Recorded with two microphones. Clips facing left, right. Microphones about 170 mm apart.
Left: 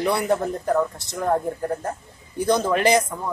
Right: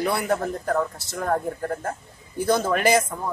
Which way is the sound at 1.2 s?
15° left (ahead or behind).